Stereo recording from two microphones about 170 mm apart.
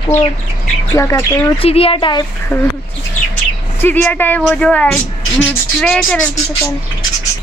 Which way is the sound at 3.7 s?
10° left (ahead or behind).